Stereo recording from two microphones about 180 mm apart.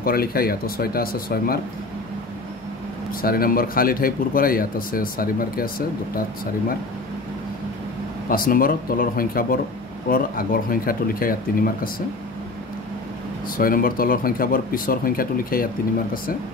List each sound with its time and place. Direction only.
0.0 s speech: 55° left (ahead or behind)
3.1 s speech: 55° left (ahead or behind)
8.3 s speech: 55° left (ahead or behind)
13.6 s speech: 50° left (ahead or behind)